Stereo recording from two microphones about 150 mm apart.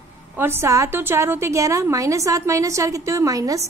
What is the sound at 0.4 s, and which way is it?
A woman's voice, 15° right (ahead or behind).